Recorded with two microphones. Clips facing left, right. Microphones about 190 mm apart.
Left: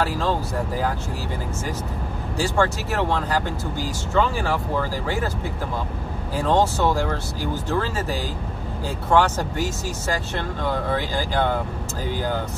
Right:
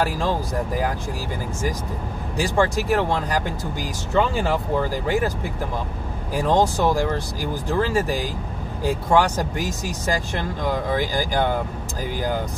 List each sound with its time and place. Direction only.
2.3 s speech: 15° right (ahead or behind)
6.3 s speech: 15° right (ahead or behind)